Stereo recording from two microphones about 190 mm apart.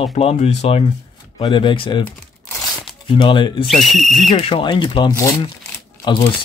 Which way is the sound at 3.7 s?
Centre (ahead or behind).